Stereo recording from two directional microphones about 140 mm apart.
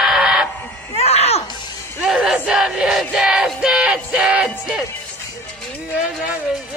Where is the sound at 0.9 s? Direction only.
45° left (ahead or behind).